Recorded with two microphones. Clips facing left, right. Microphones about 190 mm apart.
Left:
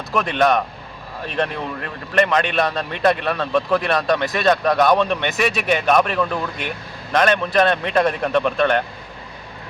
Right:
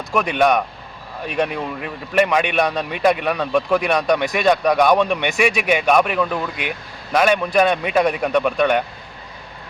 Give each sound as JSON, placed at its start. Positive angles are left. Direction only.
{"t": 0.1, "sound": "speech", "side_deg": -10}